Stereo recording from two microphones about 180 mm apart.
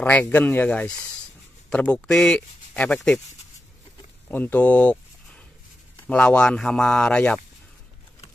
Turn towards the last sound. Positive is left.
turn(degrees=5)  # may be behind; listen again after turning